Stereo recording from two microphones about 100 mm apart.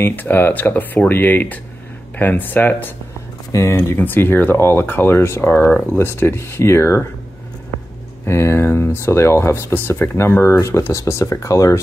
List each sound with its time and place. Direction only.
0.0 s speech: 20° left (ahead or behind)
3.5 s speech: 30° left (ahead or behind)
8.3 s speech: 30° left (ahead or behind)